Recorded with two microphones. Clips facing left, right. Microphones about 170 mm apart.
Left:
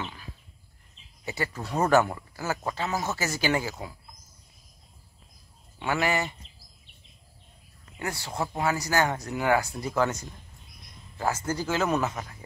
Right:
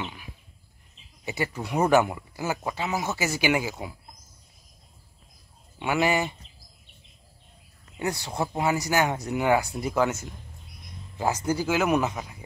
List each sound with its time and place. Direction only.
1.2 s speech: 15° right (ahead or behind)
5.8 s speech: 15° right (ahead or behind)
8.0 s speech: 15° right (ahead or behind)